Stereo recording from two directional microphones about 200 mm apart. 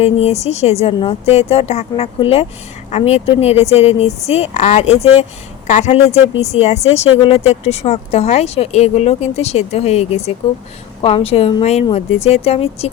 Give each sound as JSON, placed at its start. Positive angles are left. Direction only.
{"t": 0.0, "sound": "a woman's voice", "side_deg": 30}